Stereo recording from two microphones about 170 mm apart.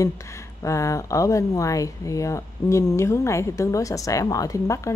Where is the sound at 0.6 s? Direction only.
20° left (ahead or behind).